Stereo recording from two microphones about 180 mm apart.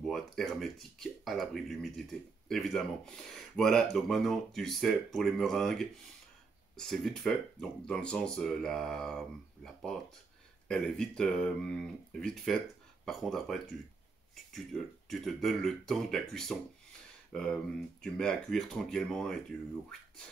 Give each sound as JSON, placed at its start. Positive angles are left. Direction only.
{"t": 0.0, "sound": "speech", "side_deg": 0}